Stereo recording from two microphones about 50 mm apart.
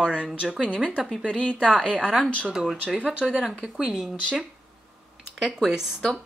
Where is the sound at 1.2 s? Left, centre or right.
Left.